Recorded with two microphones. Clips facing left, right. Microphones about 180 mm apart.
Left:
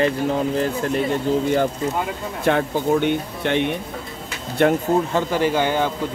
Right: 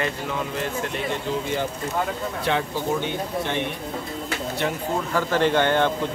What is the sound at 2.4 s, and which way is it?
Speech, 50° left (ahead or behind).